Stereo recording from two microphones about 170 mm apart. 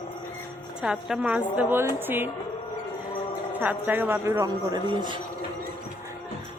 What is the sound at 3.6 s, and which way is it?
A woman's voice, 10° right (ahead or behind).